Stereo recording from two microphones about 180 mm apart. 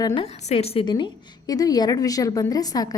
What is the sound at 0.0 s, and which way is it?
A woman's voice, 25° left (ahead or behind).